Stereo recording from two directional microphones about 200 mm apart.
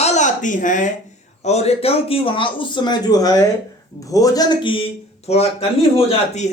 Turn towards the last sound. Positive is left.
turn(degrees=35)  # may be behind; listen again after turning